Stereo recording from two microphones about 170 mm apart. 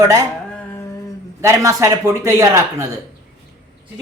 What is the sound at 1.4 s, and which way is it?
A man's voice, 20° right (ahead or behind).